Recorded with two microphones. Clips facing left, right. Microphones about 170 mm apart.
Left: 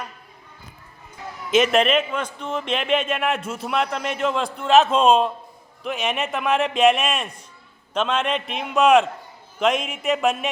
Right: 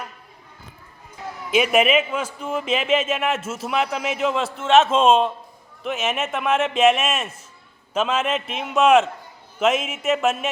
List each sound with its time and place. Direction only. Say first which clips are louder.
1.5 s a man's voice: even; 10° right (ahead or behind)